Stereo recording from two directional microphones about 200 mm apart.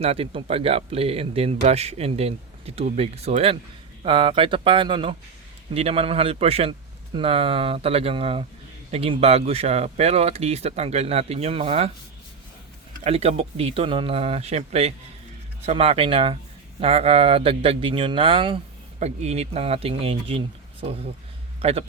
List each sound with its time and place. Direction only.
0.0 s speech: 30° right (ahead or behind)
13.1 s a man's voice: 30° right (ahead or behind)